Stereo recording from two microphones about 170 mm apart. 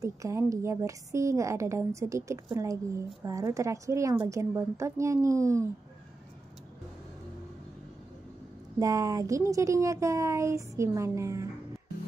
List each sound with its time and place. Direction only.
0.0 s a woman's voice: 15° right (ahead or behind)
8.7 s speech: 20° right (ahead or behind)